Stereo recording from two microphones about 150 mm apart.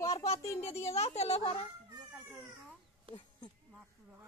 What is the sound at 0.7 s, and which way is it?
Speech, 45° left (ahead or behind).